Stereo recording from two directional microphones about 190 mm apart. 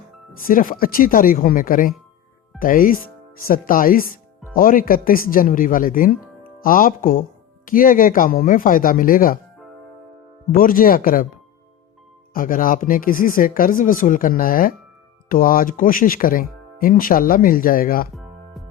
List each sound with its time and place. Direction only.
0.4 s speech: 45° left (ahead or behind)
10.5 s speech: 50° left (ahead or behind)
12.3 s speech: 45° left (ahead or behind)
18.1 s music: centre (ahead or behind)